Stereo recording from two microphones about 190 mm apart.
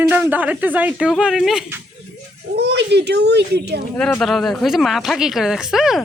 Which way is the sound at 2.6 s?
65° right (ahead or behind).